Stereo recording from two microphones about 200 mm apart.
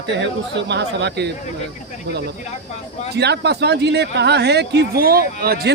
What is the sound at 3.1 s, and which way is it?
Speech, 55° right (ahead or behind).